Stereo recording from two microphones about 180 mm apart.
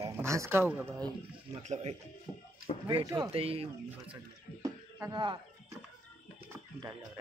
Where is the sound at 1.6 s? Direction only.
40° right (ahead or behind).